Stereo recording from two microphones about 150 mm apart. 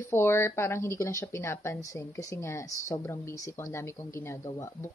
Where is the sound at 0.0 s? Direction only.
15° left (ahead or behind).